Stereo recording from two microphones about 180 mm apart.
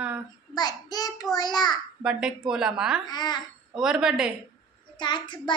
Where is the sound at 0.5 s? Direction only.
20° left (ahead or behind).